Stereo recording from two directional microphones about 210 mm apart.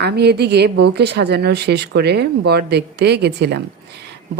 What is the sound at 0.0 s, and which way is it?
A woman's voice, 50° right (ahead or behind).